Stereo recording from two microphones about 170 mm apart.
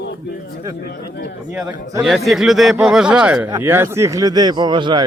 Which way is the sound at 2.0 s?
Centre (ahead or behind).